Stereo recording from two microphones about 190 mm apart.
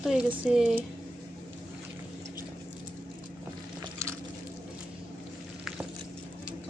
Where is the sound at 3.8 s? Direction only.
15° right (ahead or behind).